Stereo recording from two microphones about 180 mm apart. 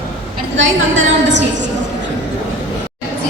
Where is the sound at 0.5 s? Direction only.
90° right.